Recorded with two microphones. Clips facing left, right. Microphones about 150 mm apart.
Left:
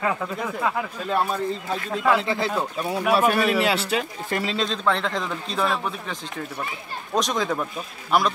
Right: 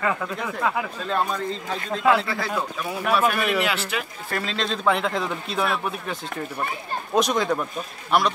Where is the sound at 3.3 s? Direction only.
30° left (ahead or behind).